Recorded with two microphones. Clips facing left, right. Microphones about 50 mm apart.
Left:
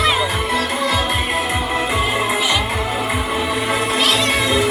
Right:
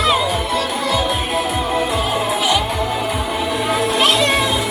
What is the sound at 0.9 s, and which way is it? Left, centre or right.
Music, left.